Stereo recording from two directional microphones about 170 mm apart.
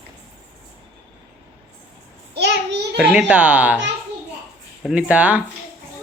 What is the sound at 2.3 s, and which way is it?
Child singing, 80° right.